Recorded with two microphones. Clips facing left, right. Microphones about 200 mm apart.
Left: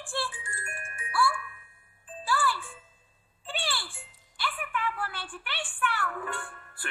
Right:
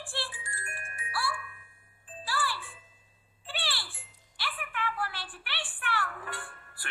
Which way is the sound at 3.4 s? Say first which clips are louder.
Left 4 dB; 50° left (ahead or behind).